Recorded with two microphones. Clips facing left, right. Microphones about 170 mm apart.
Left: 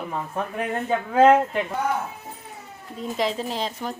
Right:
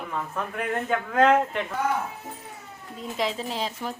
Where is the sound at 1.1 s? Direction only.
5° left (ahead or behind).